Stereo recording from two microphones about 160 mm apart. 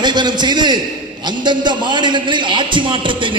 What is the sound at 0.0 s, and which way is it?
A man's voice, 30° right (ahead or behind).